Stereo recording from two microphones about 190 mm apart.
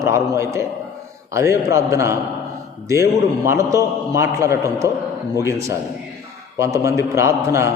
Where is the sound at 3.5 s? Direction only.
15° right (ahead or behind).